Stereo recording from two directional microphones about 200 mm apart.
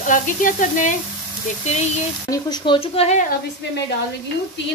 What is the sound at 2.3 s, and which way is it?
Speech, 20° left (ahead or behind).